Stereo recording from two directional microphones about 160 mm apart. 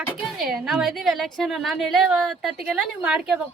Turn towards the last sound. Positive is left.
turn(degrees=-5)  # may be behind; listen again after turning